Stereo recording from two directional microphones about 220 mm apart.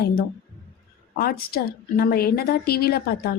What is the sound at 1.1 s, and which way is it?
A woman's voice, 45° left (ahead or behind).